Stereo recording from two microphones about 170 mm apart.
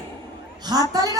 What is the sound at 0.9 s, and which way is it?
Speech, 20° right (ahead or behind).